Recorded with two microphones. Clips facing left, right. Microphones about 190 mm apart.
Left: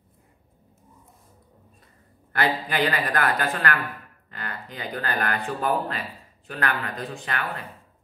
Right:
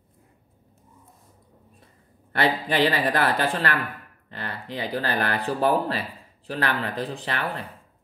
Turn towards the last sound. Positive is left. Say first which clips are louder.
# right 2 dB
turn(degrees=-35)  # may be behind; listen again after turning